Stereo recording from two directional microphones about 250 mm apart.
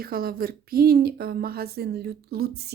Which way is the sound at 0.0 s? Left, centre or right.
Right.